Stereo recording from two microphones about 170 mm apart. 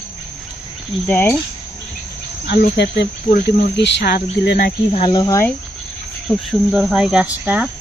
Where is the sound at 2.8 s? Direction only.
85° left.